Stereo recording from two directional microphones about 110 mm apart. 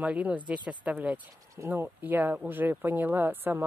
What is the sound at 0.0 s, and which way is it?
Speech, 15° right (ahead or behind).